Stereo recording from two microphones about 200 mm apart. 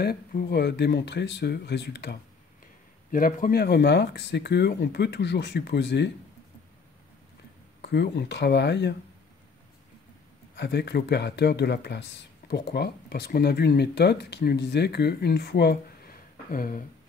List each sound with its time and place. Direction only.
0.0 s speech: 50° left (ahead or behind)
3.1 s speech: 45° left (ahead or behind)
7.8 s speech: 55° left (ahead or behind)
10.5 s speech: 55° left (ahead or behind)